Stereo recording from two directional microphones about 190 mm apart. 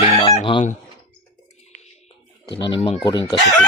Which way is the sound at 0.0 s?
30° left (ahead or behind).